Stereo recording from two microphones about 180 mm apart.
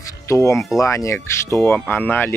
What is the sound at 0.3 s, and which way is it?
Speech, 15° left (ahead or behind).